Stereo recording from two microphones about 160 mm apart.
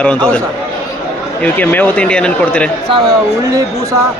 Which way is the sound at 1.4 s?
10° left (ahead or behind).